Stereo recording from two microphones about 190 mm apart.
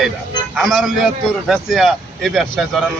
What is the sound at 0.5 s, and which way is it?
A man's voice, centre (ahead or behind).